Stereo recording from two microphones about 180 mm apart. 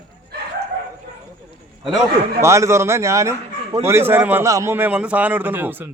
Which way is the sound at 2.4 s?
15° right (ahead or behind).